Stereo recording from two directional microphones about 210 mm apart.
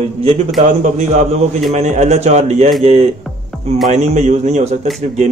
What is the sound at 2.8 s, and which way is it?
Mantra, 30° right (ahead or behind).